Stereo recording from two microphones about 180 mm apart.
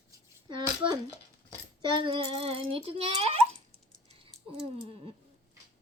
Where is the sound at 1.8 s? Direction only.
30° right (ahead or behind).